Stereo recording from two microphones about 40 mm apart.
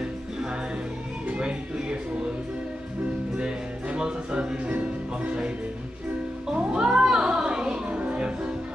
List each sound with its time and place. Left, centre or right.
0.0 s music: right
3.3 s music: right
6.4 s music: centre